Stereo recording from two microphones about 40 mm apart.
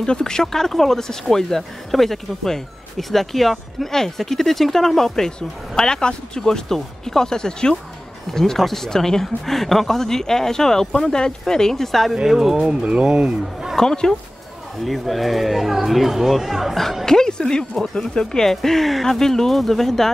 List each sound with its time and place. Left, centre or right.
0.0 s speech: centre
12.3 s speech: centre
12.6 s speech: right
13.7 s speech: centre
14.9 s speech: centre
17.0 s speech: centre